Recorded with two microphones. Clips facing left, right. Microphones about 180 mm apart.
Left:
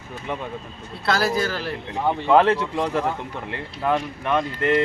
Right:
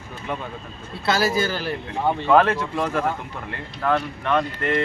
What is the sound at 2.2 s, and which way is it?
Speech, 20° left (ahead or behind).